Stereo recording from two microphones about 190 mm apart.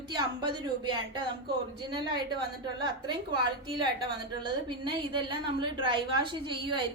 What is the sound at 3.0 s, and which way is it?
Speech, 25° right (ahead or behind).